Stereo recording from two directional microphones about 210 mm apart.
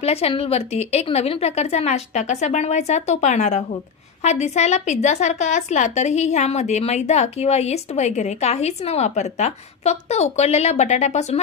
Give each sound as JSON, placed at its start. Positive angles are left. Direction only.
{"t": 0.0, "sound": "a woman's voice", "side_deg": 30}